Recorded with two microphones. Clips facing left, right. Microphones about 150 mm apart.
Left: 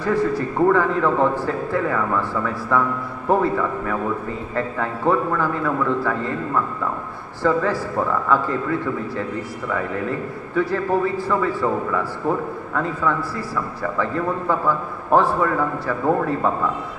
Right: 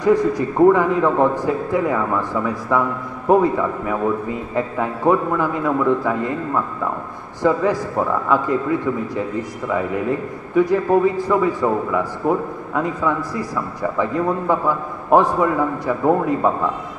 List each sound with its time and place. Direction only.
0.0 s a man's voice: 15° right (ahead or behind)
10.5 s a man's voice: 15° right (ahead or behind)